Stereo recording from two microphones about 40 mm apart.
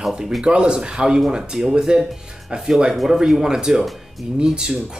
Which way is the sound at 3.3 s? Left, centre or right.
Centre.